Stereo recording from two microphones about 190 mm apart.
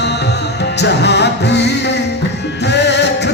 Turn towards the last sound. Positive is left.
turn(degrees=65)  # may be behind; listen again after turning